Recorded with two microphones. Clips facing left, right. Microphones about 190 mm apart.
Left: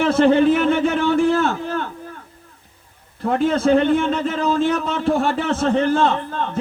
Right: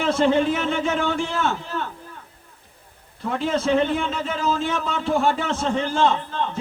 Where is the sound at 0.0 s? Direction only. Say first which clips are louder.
Left 5 dB; 60° left (ahead or behind).